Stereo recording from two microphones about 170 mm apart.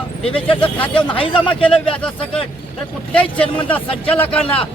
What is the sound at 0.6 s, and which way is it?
Speech, 30° left (ahead or behind).